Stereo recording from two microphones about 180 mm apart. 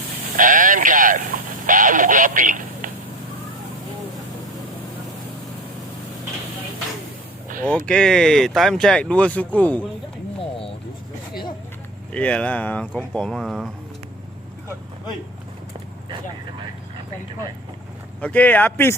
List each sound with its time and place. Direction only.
0.3 s sheep: 45° right (ahead or behind)
1.6 s speech: 45° right (ahead or behind)
7.7 s speech: 5° left (ahead or behind)
12.1 s speech: 5° left (ahead or behind)
18.2 s speech: 10° left (ahead or behind)